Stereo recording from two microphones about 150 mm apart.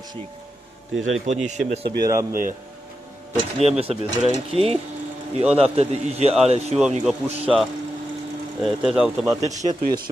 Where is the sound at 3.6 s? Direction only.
45° right (ahead or behind).